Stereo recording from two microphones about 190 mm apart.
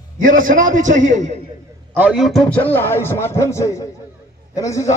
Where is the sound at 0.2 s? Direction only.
45° right (ahead or behind).